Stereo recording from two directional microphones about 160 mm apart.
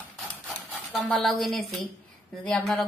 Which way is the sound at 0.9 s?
Centre (ahead or behind).